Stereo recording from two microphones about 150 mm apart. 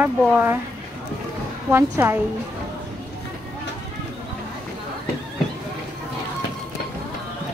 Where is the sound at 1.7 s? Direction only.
15° right (ahead or behind).